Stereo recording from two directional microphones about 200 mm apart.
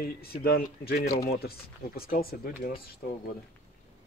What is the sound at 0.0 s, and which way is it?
Speech, 50° left (ahead or behind).